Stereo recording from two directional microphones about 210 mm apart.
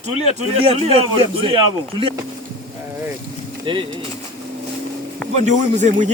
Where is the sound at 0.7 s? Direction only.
25° right (ahead or behind).